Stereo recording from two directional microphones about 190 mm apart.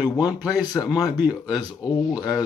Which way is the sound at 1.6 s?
20° left (ahead or behind).